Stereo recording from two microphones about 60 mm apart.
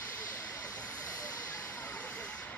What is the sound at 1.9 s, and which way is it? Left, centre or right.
Vehicle, left.